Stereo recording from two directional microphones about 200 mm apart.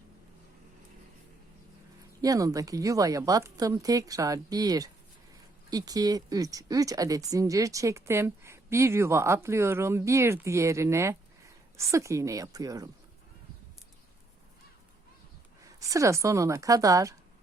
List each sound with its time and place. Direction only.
2.2 s speech: 15° right (ahead or behind)
15.8 s speech: 15° right (ahead or behind)